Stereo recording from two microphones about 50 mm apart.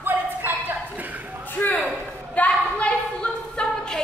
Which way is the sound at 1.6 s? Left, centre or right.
Left.